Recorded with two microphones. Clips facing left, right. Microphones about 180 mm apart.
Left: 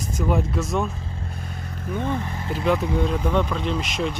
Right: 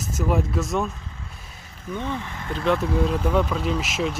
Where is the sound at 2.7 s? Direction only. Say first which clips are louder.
Even; centre (ahead or behind).